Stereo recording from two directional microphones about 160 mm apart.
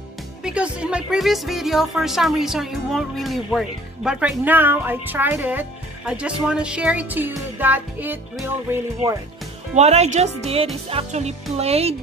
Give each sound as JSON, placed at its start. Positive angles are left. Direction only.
{"t": 0.4, "sound": "speech", "side_deg": -5}
{"t": 9.8, "sound": "speech", "side_deg": -45}